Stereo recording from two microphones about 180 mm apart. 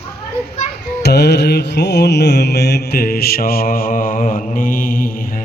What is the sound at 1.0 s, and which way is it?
Mantra, 65° left (ahead or behind).